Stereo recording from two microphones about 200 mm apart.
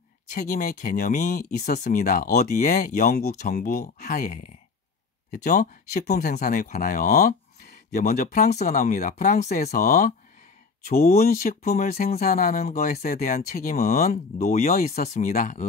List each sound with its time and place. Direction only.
0.3 s speech: 45° left (ahead or behind)